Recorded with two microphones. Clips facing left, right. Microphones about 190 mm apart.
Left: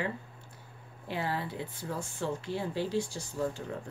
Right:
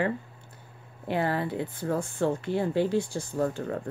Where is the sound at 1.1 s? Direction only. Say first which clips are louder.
Right 7 dB; 55° right (ahead or behind).